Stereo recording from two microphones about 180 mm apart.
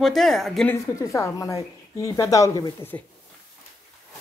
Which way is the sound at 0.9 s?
15° left (ahead or behind).